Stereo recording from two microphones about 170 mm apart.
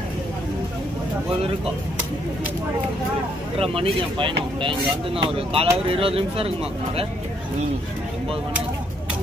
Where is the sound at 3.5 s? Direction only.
35° right (ahead or behind).